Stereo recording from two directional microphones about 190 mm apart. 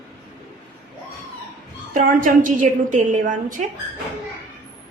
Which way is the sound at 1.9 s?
45° right (ahead or behind).